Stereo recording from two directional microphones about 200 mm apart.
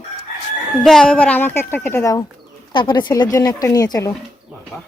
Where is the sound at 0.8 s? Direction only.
Centre (ahead or behind); by 4.1 s 20° left (ahead or behind).